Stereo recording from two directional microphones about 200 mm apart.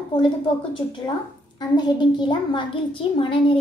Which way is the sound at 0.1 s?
25° left (ahead or behind).